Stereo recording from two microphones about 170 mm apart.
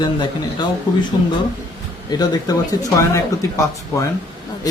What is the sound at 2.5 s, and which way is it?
Speech, 20° left (ahead or behind).